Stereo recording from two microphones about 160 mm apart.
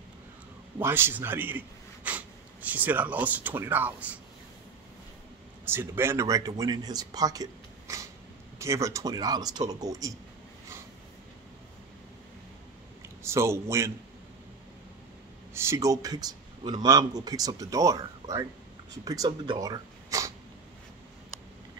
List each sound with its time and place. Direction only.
0.7 s a man's voice: 15° right (ahead or behind)
5.7 s speech: 15° right (ahead or behind)
7.9 s a sound: 20° right (ahead or behind)
8.5 s speech: 20° right (ahead or behind)
13.2 s a man's voice: 15° right (ahead or behind)
15.5 s speech: 15° right (ahead or behind)